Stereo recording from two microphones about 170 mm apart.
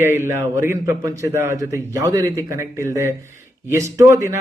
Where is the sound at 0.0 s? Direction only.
15° right (ahead or behind).